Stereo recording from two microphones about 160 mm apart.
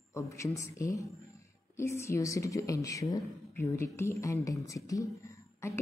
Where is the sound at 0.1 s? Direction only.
20° left (ahead or behind).